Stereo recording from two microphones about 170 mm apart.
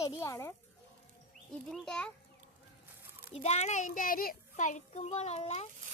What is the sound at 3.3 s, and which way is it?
A child's voice, 40° left (ahead or behind).